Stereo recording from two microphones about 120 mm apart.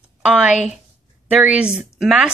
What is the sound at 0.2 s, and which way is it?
Speech, 10° right (ahead or behind).